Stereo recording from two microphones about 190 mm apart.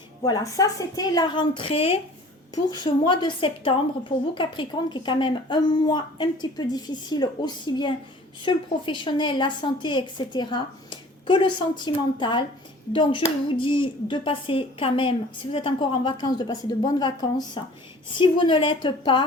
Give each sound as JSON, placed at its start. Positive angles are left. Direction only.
{"t": 0.3, "sound": "a woman's voice", "side_deg": 20}
{"t": 2.6, "sound": "a woman's voice", "side_deg": 20}